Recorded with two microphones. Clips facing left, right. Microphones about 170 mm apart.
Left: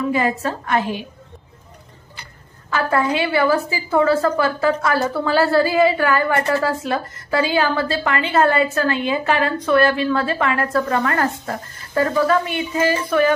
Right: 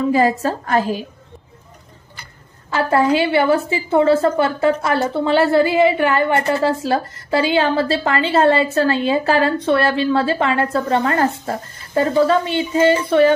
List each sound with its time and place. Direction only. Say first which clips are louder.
0.1 s a woman's voice: right 4 dB; 35° right (ahead or behind)
2.7 s a woman's voice: right 4 dB; 30° right (ahead or behind)